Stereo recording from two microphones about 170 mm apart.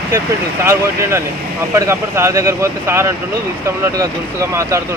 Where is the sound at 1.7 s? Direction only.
15° right (ahead or behind).